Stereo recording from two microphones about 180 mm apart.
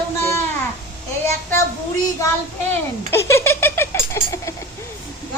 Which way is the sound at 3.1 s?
15° left (ahead or behind).